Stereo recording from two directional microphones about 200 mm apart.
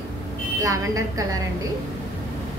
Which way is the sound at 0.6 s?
15° right (ahead or behind).